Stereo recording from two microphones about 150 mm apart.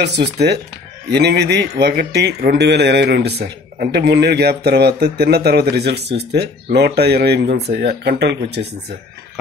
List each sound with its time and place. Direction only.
1.1 s speech: 90° right